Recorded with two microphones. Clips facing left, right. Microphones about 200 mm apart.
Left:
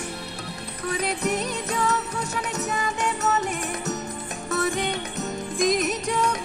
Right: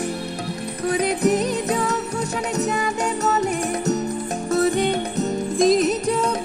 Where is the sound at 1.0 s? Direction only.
40° right (ahead or behind).